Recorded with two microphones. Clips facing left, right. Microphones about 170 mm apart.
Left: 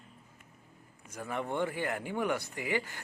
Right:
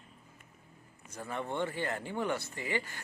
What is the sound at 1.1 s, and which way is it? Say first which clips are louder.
A man's voice: left 2 dB; 10° left (ahead or behind).